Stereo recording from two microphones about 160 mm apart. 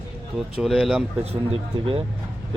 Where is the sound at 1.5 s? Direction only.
35° right (ahead or behind).